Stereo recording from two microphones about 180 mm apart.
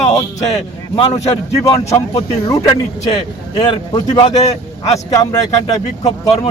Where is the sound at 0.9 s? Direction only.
35° left (ahead or behind).